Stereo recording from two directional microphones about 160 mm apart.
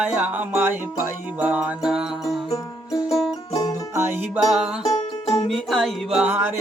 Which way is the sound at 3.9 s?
15° right (ahead or behind).